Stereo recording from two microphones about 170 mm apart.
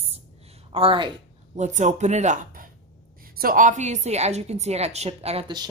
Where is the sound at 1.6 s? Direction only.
45° right (ahead or behind).